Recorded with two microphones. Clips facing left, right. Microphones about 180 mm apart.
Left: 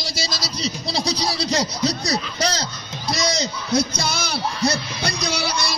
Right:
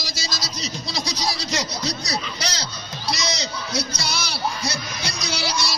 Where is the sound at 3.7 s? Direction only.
55° left (ahead or behind).